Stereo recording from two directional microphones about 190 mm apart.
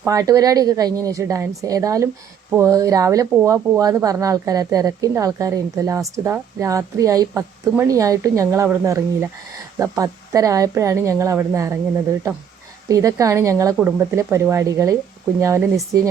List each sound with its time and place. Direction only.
0.0 s speech: 15° right (ahead or behind)
12.9 s speech: 15° right (ahead or behind)